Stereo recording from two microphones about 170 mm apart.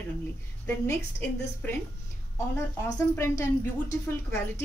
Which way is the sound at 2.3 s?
15° left (ahead or behind).